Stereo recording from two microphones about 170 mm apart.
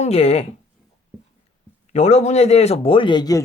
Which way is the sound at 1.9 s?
40° left (ahead or behind).